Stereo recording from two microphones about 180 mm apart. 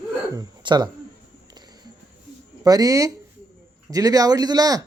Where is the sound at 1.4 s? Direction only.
25° right (ahead or behind).